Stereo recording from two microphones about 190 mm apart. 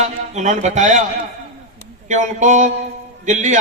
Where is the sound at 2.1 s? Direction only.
40° right (ahead or behind).